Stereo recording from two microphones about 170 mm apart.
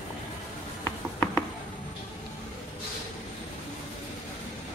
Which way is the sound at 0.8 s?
15° left (ahead or behind).